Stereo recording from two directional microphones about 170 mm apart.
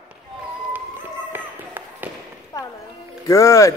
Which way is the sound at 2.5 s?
20° left (ahead or behind).